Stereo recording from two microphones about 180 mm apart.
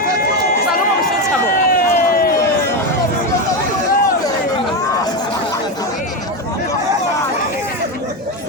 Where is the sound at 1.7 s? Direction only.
55° left (ahead or behind).